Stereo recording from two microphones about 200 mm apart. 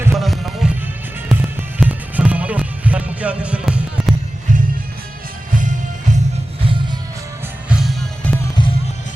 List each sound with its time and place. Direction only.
0.1 s music: centre (ahead or behind)
5.5 s music: 40° right (ahead or behind)
7.7 s music: centre (ahead or behind)